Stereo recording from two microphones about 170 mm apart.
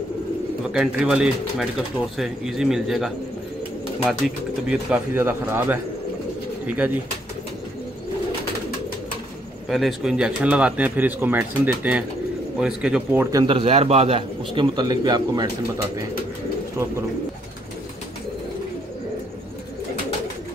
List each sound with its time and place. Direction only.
0.7 s speech: 5° right (ahead or behind)
9.7 s a man's voice: centre (ahead or behind); by 15.5 s 25° right (ahead or behind)